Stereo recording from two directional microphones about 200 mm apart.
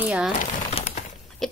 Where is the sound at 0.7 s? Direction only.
30° left (ahead or behind).